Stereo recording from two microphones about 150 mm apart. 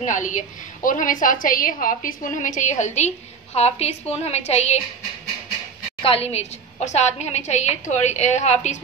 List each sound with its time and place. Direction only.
0.0 s a woman's voice: 55° left (ahead or behind)
6.0 s a woman's voice: 40° left (ahead or behind)